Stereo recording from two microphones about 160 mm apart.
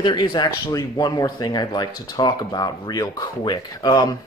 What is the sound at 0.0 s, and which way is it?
Speech, 25° left (ahead or behind).